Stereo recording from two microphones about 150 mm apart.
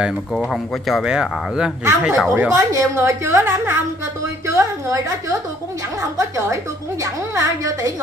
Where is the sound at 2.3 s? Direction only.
15° right (ahead or behind).